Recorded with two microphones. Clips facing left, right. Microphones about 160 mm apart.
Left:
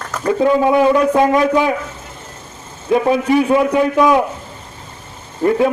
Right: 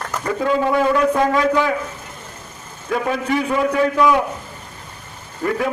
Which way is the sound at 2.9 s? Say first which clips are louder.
Left 7 dB; 20° left (ahead or behind).